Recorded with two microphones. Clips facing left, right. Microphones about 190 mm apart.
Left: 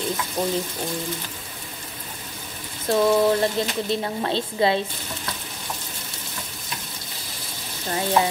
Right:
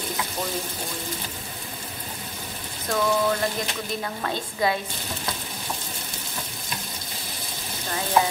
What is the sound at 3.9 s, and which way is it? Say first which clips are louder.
Sizzle: left 5 dB; 25° left (ahead or behind).